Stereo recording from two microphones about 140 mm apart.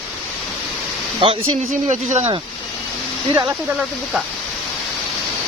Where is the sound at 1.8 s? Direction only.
55° right (ahead or behind).